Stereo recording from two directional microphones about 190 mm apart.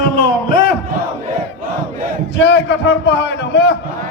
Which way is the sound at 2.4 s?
70° left (ahead or behind).